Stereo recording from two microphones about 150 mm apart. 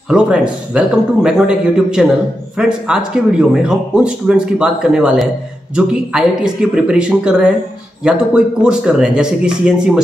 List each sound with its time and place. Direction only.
0.1 s speech: 5° right (ahead or behind)